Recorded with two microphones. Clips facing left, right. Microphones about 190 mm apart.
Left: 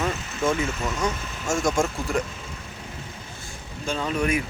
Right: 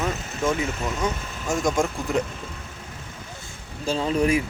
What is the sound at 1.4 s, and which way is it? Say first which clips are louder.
Speech: even; 20° right (ahead or behind).